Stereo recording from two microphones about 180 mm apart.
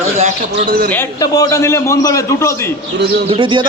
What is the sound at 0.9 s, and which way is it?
A man's voice, 15° left (ahead or behind).